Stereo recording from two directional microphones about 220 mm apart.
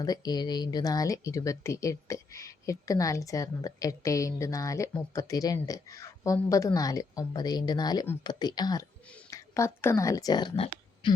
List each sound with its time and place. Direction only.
0.0 s a woman's voice: 20° left (ahead or behind)